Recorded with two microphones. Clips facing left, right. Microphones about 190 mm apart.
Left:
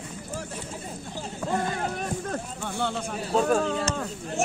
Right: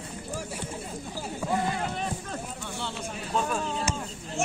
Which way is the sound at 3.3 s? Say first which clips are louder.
Left 7 dB; 45° left (ahead or behind).